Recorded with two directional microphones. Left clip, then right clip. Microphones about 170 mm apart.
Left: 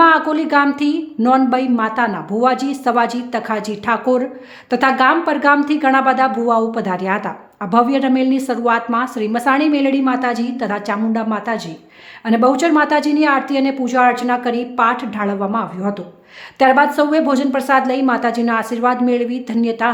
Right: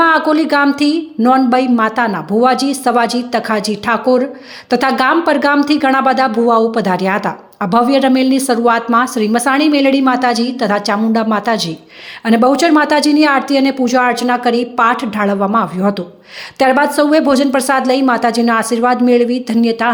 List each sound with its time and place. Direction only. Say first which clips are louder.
0.0 s a woman's voice: right 1 dB; 15° right (ahead or behind)